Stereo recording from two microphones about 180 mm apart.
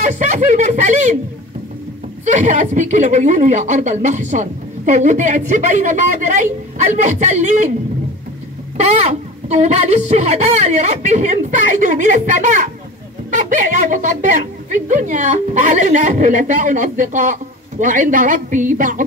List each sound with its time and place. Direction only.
0.0 s speech: 40° right (ahead or behind)
2.2 s speech: 45° right (ahead or behind)
9.0 s speech: 40° right (ahead or behind)